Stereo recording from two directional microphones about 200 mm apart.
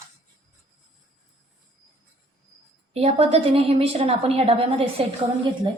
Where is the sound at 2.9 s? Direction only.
30° right (ahead or behind).